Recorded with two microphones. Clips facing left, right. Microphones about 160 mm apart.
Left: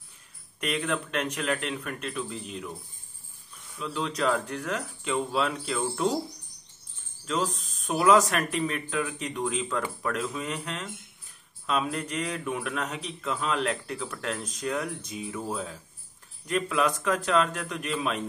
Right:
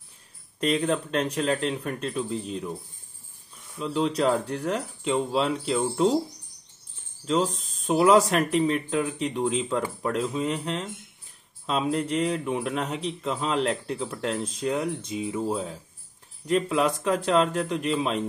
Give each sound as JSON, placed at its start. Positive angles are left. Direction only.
{"t": 0.6, "sound": "speech", "side_deg": -30}
{"t": 3.7, "sound": "a man's voice", "side_deg": -30}
{"t": 7.2, "sound": "a man's voice", "side_deg": -25}